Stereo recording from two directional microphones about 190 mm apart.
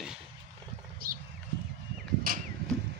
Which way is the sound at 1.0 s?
50° right (ahead or behind).